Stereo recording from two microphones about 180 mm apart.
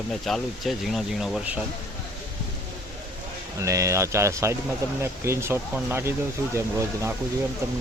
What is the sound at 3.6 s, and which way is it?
Speech, 15° right (ahead or behind).